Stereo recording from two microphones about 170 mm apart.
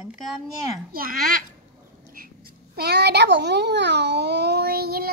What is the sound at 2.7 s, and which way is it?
A child's voice, 75° right (ahead or behind).